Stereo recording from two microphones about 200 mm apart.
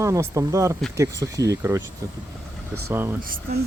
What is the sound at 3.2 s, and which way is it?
Speech, 45° right (ahead or behind).